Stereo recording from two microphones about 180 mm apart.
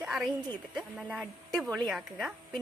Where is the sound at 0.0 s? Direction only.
5° right (ahead or behind).